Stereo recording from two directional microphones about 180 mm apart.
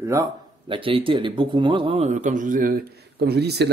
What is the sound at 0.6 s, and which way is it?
A man's voice, 30° right (ahead or behind).